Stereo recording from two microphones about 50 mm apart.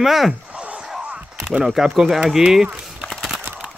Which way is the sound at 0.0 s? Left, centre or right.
Centre.